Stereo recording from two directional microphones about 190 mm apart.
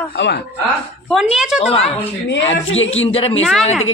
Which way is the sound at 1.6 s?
30° left (ahead or behind).